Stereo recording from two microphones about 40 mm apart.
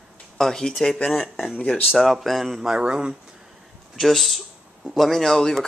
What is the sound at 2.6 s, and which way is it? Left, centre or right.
Speech, centre.